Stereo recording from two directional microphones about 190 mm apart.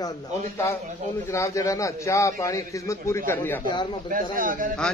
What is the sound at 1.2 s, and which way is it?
A man's voice, 15° left (ahead or behind).